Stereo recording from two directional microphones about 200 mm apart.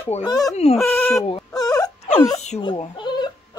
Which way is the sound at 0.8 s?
Centre (ahead or behind).